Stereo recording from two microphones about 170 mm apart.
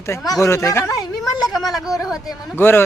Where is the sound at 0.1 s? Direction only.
15° left (ahead or behind).